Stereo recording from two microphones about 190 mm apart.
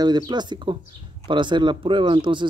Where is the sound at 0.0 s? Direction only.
20° right (ahead or behind).